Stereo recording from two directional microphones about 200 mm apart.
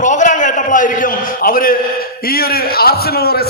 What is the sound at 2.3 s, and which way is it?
A man's voice, 50° left (ahead or behind).